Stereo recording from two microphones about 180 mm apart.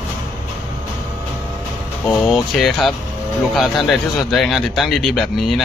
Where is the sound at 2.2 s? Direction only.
Centre (ahead or behind).